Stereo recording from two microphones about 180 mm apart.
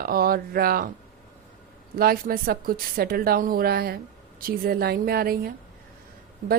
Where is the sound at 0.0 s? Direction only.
55° right (ahead or behind).